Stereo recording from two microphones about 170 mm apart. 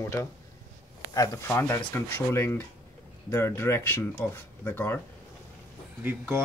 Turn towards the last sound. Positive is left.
turn(degrees=-10)  # may be behind; listen again after turning